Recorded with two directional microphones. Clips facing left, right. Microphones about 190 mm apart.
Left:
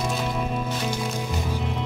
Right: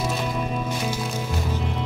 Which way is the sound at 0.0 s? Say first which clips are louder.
Even; 5° right (ahead or behind).